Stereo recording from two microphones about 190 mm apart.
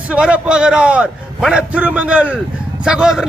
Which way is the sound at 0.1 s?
5° right (ahead or behind).